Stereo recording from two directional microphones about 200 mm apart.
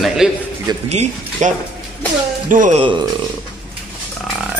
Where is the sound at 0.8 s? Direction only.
35° right (ahead or behind).